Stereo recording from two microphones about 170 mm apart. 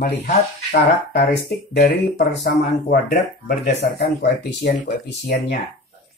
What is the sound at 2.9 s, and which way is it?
Speech, 65° left (ahead or behind).